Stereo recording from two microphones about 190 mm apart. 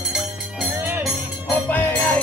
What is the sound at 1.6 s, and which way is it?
Music, 10° left (ahead or behind).